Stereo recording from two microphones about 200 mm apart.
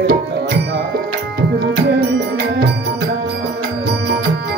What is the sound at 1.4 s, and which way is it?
Music, 55° right (ahead or behind).